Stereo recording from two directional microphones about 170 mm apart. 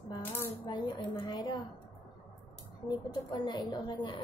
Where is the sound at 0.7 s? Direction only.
25° left (ahead or behind).